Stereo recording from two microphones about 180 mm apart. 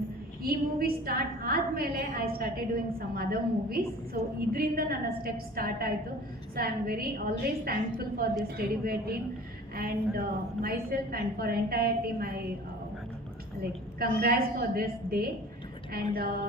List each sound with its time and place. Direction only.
0.4 s a woman's voice: 55° right (ahead or behind)
4.4 s a woman's voice: 55° right (ahead or behind)
13.6 s a woman's voice: 55° right (ahead or behind)